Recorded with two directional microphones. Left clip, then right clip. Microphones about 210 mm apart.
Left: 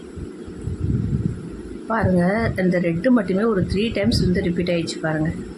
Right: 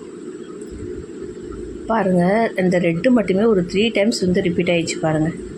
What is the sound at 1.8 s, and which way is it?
Speech, 10° right (ahead or behind).